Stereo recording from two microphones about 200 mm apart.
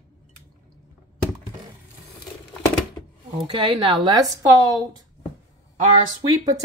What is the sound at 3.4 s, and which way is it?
Speech, 25° right (ahead or behind).